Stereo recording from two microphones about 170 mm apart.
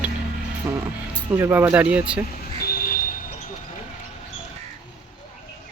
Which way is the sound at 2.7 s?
60° left (ahead or behind).